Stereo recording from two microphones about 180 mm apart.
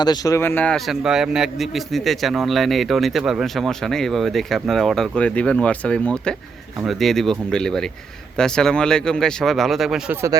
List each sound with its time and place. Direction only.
0.0 s a man's voice: 20° left (ahead or behind); by 10.2 s centre (ahead or behind)